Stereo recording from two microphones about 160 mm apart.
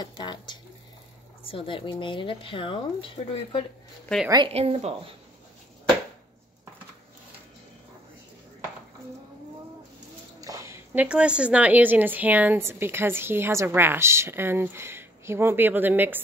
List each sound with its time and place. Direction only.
0.0 s speech: 25° left (ahead or behind)
4.3 s speech: 35° right (ahead or behind)
10.4 s a woman's voice: 20° right (ahead or behind)